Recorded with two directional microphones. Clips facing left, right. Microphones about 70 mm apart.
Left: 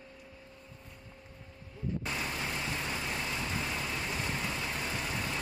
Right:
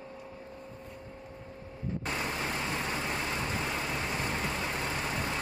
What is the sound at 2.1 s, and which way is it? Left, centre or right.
Vehicle, right.